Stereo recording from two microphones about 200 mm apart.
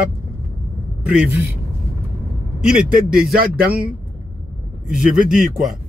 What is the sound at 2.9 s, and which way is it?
Speech, 45° right (ahead or behind).